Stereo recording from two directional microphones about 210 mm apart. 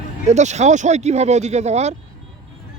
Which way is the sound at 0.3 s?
35° right (ahead or behind).